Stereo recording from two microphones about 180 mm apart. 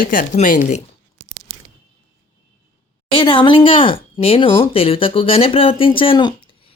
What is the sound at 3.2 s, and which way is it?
Speech, 30° left (ahead or behind).